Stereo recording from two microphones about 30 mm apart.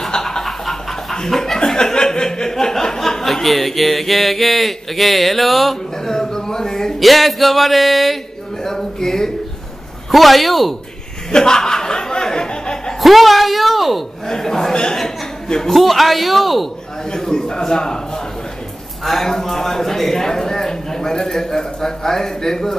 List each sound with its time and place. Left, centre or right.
0.4 s a sound: centre
1.1 s chuckle: centre
2.0 s speech: left; by 5.8 s centre
6.0 s speech: centre
7.0 s speech: centre
8.6 s a man's voice: centre
10.1 s speech: centre
11.3 s a sound: left
13.0 s speech: centre
14.2 s a man's voice: centre
14.7 s a man's voice: left
15.0 s a sound: centre
15.7 s speech: centre
17.1 s a man's voice: left